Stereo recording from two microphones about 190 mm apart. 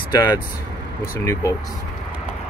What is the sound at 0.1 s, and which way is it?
Speech, 20° left (ahead or behind).